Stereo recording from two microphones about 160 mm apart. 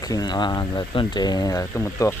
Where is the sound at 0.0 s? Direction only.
25° left (ahead or behind).